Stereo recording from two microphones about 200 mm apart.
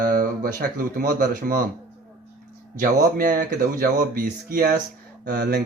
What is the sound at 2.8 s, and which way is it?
A man's voice, 45° right (ahead or behind).